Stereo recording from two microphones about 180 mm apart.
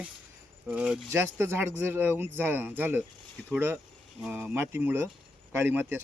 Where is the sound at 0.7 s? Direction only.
5° right (ahead or behind).